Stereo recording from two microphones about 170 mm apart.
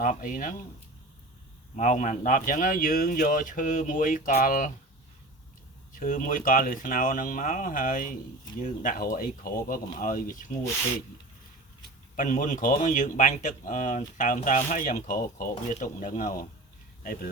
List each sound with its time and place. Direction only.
0.0 s speech: 50° left (ahead or behind)
1.7 s speech: 45° left (ahead or behind)
5.9 s speech: 50° left (ahead or behind)
12.1 s speech: 50° left (ahead or behind)